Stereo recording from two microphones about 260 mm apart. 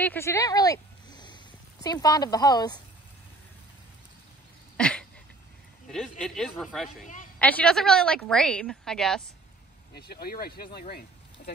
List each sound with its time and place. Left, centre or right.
0.0 s speech: centre
4.7 s a sound: centre
5.9 s a woman's voice: centre
9.9 s speech: left